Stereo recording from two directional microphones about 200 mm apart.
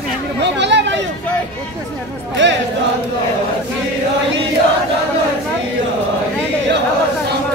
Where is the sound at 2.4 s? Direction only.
65° right (ahead or behind).